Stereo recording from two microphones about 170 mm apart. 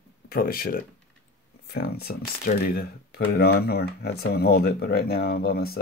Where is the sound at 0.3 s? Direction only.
60° left (ahead or behind).